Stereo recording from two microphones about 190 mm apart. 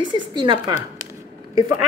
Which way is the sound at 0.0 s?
25° right (ahead or behind).